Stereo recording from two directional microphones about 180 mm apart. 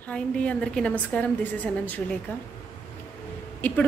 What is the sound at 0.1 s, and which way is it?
A woman's voice, 5° left (ahead or behind).